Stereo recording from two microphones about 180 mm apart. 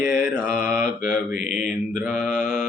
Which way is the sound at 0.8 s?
50° left (ahead or behind).